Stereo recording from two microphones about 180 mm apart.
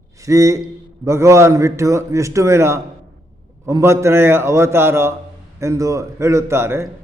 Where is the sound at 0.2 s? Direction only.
15° right (ahead or behind).